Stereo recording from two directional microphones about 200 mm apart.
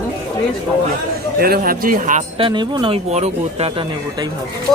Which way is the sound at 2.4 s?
20° right (ahead or behind).